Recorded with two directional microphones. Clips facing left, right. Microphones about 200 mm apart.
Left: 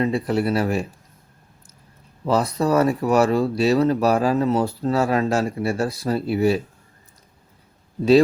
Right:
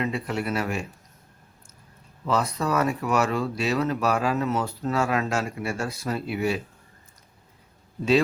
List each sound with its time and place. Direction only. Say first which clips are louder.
0.0 s speech: left 7 dB; 35° left (ahead or behind)
2.2 s speech: left 5 dB; 35° left (ahead or behind)